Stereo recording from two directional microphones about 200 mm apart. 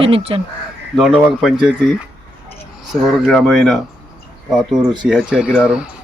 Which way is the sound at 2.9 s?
Centre (ahead or behind).